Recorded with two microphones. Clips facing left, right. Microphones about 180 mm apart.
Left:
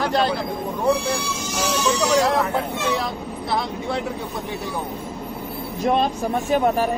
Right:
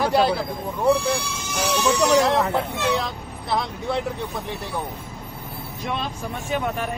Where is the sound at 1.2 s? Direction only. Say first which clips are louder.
Left 1 dB; 55° right (ahead or behind).